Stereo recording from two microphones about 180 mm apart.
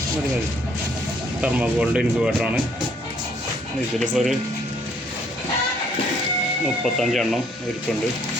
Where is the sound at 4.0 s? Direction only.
Centre (ahead or behind).